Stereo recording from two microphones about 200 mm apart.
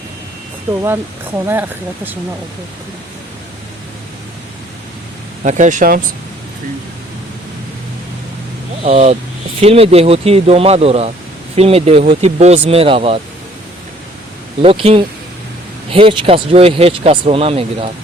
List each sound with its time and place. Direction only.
0.7 s speech: 15° right (ahead or behind)
5.4 s speech: 35° right (ahead or behind)
8.8 s speech: 35° right (ahead or behind)
14.6 s speech: 30° right (ahead or behind)